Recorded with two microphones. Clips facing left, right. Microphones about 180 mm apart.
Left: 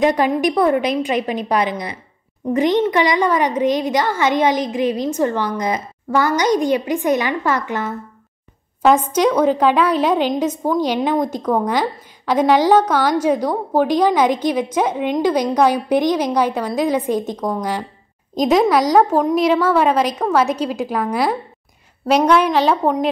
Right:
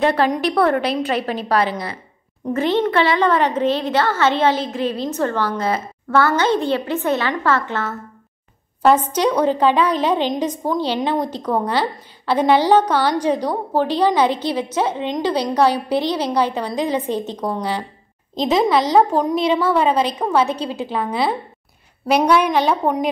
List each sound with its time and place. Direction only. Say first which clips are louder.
0.0 s a woman's voice: left 2 dB; 15° left (ahead or behind)
17.4 s a woman's voice: left 1 dB; 10° right (ahead or behind)
18.3 s a woman's voice: left 2 dB; 10° left (ahead or behind)
22.0 s a woman's voice: left 1 dB; 10° right (ahead or behind)